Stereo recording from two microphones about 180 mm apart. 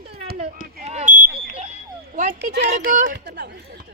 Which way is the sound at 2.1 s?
45° right (ahead or behind).